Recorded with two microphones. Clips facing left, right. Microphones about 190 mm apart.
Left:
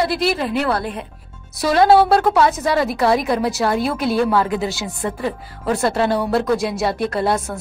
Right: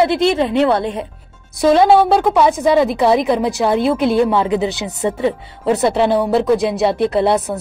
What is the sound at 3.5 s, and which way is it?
Music, 15° right (ahead or behind).